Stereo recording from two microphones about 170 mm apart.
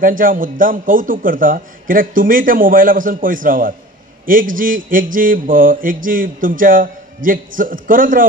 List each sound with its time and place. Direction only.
0.0 s a man's voice: 55° right (ahead or behind)
4.3 s mantra: 55° right (ahead or behind)